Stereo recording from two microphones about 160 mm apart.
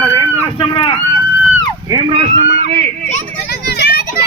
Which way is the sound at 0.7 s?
30° left (ahead or behind).